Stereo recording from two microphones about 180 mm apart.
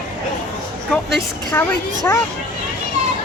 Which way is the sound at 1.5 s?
15° left (ahead or behind).